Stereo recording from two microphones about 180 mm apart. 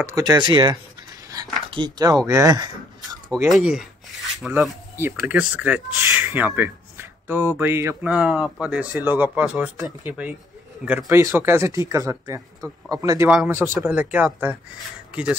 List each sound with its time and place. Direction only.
0.0 s speech: 20° right (ahead or behind)
3.4 s rub: centre (ahead or behind)
4.5 s speech: 5° right (ahead or behind); by 13.3 s 20° right (ahead or behind)
13.8 s speech: 10° right (ahead or behind)